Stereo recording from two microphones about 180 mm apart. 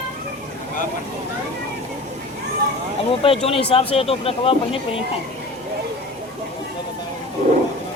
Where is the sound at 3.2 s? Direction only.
30° left (ahead or behind).